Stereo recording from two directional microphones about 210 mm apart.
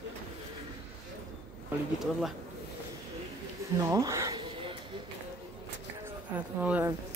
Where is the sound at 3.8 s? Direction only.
15° right (ahead or behind).